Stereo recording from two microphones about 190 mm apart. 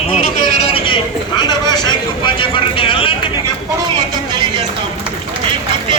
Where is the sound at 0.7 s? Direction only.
25° left (ahead or behind).